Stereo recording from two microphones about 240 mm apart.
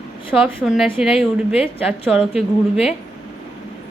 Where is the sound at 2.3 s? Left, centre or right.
Left.